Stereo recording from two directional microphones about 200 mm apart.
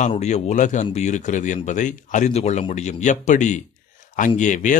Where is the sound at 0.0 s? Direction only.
35° left (ahead or behind).